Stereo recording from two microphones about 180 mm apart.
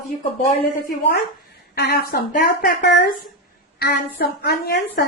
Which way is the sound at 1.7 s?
60° left (ahead or behind).